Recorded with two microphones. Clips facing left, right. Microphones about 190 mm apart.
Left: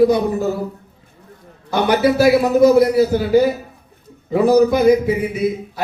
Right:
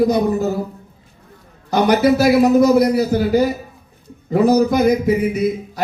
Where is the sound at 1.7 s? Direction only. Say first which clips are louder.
Right 2 dB; 40° right (ahead or behind).